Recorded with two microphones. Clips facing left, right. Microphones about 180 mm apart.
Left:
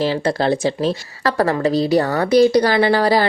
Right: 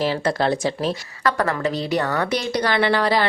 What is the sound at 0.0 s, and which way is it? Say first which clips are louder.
A woman's voice: left 3 dB; 30° left (ahead or behind).